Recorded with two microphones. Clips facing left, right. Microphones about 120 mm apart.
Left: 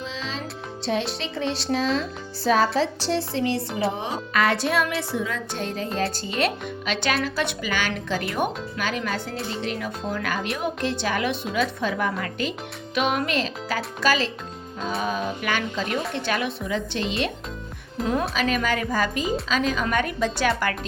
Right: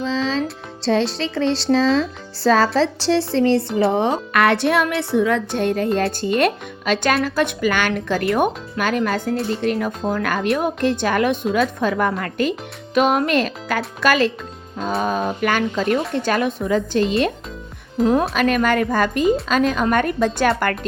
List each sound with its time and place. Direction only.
0.0 s music: 90° right
0.9 s a woman's voice: 60° right (ahead or behind)
1.5 s a woman's voice: 90° right
3.7 s speech: centre (ahead or behind)
3.9 s a woman's voice: 65° right (ahead or behind)
14.8 s speech: 40° right (ahead or behind)
18.3 s speech: 50° right (ahead or behind)